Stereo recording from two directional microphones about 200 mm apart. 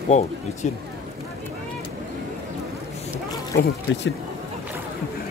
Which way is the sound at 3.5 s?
65° left (ahead or behind).